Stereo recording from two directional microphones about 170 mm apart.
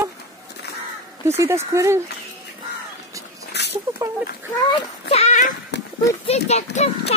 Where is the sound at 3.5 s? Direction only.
85° left.